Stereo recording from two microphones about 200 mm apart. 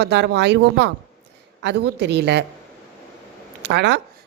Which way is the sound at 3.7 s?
60° right (ahead or behind).